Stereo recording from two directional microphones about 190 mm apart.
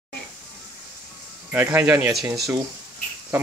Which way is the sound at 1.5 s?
10° right (ahead or behind).